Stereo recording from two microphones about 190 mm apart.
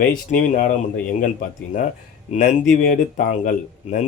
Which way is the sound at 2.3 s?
45° left (ahead or behind).